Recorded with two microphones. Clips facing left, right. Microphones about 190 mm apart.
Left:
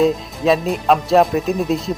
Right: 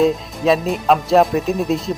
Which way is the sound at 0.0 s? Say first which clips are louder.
Even; centre (ahead or behind).